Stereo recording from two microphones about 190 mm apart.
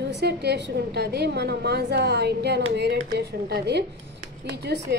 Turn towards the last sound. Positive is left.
turn(degrees=-60)  # may be behind; listen again after turning